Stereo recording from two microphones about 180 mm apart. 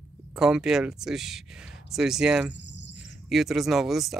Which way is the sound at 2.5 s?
80° left.